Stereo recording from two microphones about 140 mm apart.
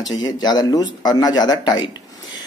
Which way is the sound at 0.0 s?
30° left (ahead or behind).